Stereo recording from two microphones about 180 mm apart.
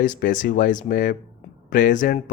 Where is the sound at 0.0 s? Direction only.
50° left (ahead or behind).